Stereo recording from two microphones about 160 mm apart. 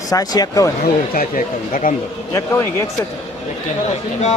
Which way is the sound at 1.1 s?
55° left (ahead or behind).